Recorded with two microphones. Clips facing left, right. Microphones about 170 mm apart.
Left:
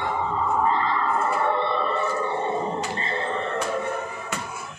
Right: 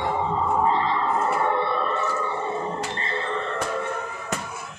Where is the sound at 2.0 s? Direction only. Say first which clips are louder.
Left 1 dB; 15° left (ahead or behind).